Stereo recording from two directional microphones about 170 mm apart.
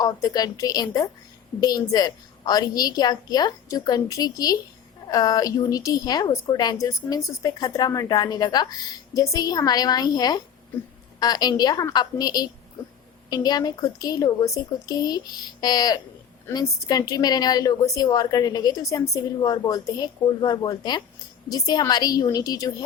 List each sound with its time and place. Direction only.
0.0 s a woman's voice: 20° left (ahead or behind)